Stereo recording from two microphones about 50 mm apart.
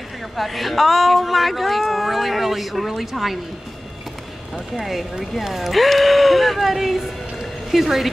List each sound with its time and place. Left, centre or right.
0.4 s speech: centre
4.7 s speech: centre